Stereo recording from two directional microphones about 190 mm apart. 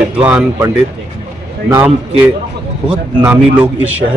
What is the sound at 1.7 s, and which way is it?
Speech, 10° right (ahead or behind).